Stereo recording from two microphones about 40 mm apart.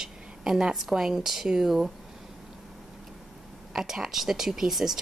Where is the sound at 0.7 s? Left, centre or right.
Centre.